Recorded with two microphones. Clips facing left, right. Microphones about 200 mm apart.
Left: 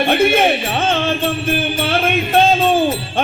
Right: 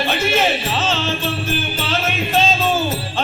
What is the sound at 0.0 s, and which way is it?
Music, 55° left (ahead or behind).